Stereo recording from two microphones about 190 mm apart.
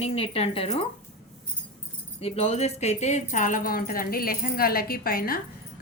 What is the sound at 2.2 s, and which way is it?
A woman's voice, 35° left (ahead or behind).